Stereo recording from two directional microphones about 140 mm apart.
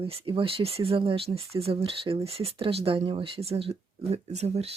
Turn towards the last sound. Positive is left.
turn(degrees=-50)  # may be behind; listen again after turning